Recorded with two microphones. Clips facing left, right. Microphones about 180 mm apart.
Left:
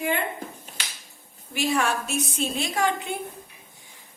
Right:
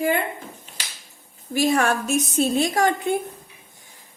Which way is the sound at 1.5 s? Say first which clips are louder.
Right 5 dB; 40° right (ahead or behind).